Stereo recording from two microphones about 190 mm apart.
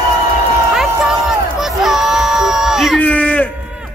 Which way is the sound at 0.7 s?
Centre (ahead or behind).